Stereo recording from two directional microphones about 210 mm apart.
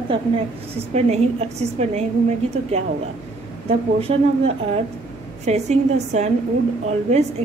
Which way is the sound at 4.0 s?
30° right (ahead or behind).